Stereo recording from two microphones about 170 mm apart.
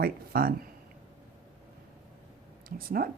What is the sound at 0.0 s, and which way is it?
Speech, 60° right (ahead or behind).